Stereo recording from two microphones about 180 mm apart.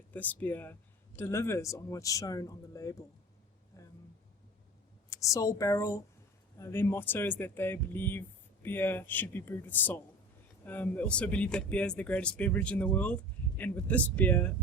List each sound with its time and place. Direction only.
0.1 s speech: 10° left (ahead or behind)
3.7 s a sound: 15° left (ahead or behind)
5.0 s a woman's voice: 20° left (ahead or behind)